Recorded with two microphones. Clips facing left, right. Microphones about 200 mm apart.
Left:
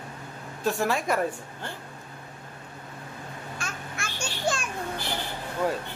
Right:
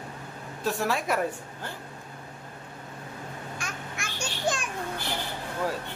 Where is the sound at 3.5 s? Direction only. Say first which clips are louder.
Even; 15° right (ahead or behind).